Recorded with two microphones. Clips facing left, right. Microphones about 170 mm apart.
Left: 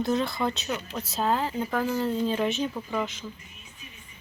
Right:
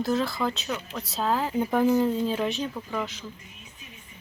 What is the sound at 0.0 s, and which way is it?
Speech, centre (ahead or behind).